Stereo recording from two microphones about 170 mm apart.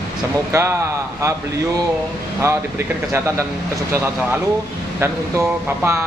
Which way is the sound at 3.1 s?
15° right (ahead or behind).